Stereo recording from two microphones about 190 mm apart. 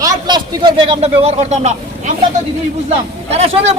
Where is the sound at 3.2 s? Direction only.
35° right (ahead or behind).